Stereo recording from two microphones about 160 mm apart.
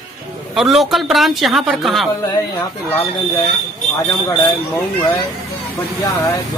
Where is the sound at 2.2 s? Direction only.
15° left (ahead or behind).